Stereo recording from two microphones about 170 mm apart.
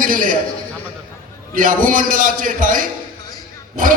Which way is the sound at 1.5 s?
50° right (ahead or behind).